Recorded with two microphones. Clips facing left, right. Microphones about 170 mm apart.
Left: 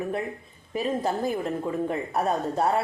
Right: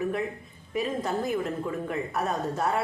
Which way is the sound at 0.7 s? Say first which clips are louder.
Left 2 dB; 30° left (ahead or behind).